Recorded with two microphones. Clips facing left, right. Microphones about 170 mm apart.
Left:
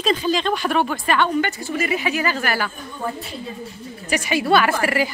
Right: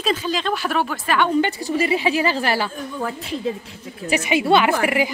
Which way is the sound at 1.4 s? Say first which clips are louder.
Right 3 dB; 30° right (ahead or behind).